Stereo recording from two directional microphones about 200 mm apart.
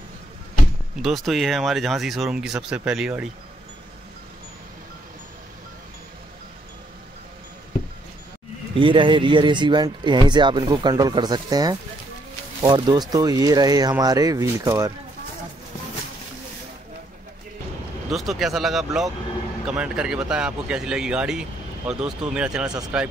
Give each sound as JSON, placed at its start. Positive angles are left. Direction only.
{"t": 1.0, "sound": "speech", "side_deg": 0}
{"t": 8.7, "sound": "speech", "side_deg": -25}
{"t": 18.1, "sound": "speech", "side_deg": 0}
{"t": 22.7, "sound": "speech", "side_deg": -20}